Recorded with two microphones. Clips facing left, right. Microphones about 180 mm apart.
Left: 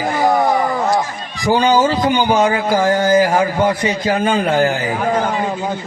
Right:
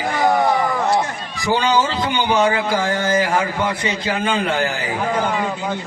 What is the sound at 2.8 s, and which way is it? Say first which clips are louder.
A man's voice: left 6 dB; 40° left (ahead or behind).